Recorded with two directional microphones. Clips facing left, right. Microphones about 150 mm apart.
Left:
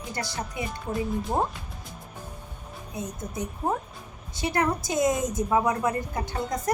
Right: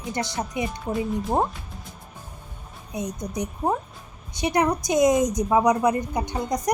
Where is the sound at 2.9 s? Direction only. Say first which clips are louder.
Right 5 dB; 20° right (ahead or behind).